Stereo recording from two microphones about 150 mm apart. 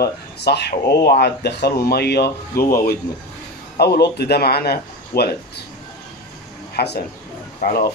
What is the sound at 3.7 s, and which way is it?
Speech, 90° left.